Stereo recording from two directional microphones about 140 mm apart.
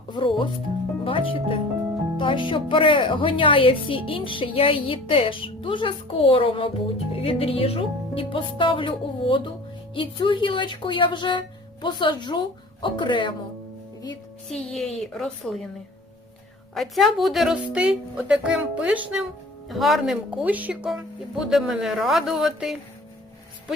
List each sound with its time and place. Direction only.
0.1 s speech: 35° left (ahead or behind)
14.5 s speech: 5° left (ahead or behind)
16.7 s a woman's voice: centre (ahead or behind)